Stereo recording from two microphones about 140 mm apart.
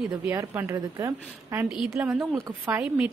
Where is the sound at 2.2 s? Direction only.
15° right (ahead or behind).